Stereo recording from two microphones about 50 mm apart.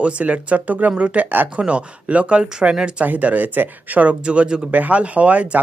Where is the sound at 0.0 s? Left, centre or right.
Right.